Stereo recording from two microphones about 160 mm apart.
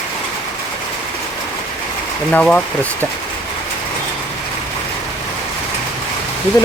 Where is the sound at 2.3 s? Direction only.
5° left (ahead or behind).